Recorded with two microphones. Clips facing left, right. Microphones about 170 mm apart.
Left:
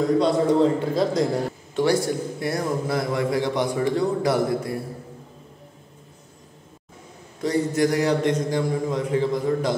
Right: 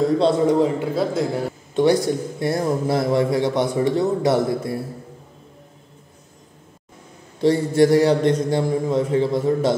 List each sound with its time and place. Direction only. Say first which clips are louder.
0.6 s a man's voice: even; 5° right (ahead or behind)
1.8 s a man's voice: right 4 dB; 20° right (ahead or behind)
7.4 s a man's voice: right 5 dB; 30° right (ahead or behind)